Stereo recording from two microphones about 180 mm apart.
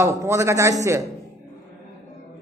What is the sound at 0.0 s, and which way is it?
A man's voice, 15° right (ahead or behind).